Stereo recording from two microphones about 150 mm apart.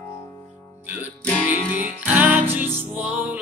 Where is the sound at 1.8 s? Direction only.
10° right (ahead or behind).